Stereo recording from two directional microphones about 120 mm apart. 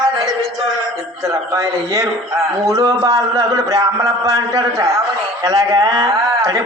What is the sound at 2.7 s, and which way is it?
A man's voice, 25° right (ahead or behind).